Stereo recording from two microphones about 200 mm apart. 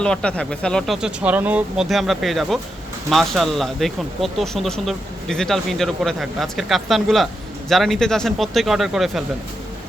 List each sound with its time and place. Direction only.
0.0 s speech: 5° left (ahead or behind)